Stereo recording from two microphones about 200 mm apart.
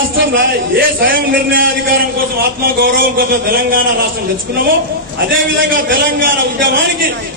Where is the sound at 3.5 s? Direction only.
45° right (ahead or behind).